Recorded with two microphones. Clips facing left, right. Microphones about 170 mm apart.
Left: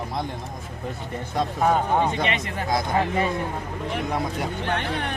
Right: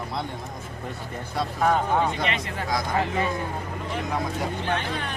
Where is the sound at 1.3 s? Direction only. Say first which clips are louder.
Left 2 dB; 15° left (ahead or behind).